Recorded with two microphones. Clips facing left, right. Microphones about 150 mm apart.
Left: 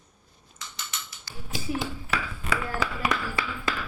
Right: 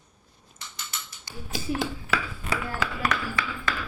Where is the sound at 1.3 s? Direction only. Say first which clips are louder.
Right 5 dB; 15° right (ahead or behind).